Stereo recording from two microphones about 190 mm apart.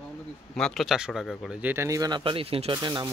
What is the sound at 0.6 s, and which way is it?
Speech, centre (ahead or behind).